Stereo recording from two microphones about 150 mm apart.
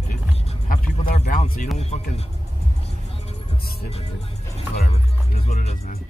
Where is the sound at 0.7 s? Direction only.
55° left (ahead or behind).